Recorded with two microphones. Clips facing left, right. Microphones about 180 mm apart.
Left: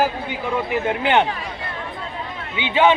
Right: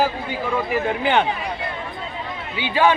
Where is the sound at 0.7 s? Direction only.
15° left (ahead or behind).